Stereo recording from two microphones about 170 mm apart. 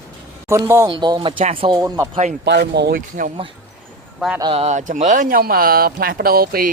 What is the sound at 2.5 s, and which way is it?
Speech, 80° right.